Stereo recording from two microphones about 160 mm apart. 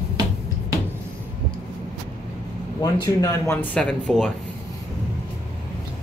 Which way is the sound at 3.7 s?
5° left (ahead or behind).